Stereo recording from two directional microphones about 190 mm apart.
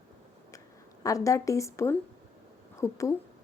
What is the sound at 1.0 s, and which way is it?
A woman's voice, 15° left (ahead or behind).